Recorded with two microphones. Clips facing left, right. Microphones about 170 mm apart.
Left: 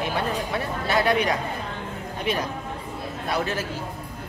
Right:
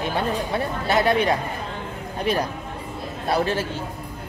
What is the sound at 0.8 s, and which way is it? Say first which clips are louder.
A man's voice: right 2 dB; 25° right (ahead or behind).